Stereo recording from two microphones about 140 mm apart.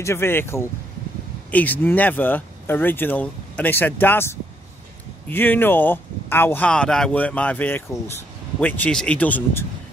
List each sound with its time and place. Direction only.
0.0 s speech: 20° left (ahead or behind)